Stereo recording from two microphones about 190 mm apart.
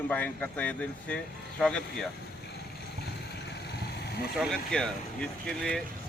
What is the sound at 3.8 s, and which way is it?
Vehicle, 60° left (ahead or behind).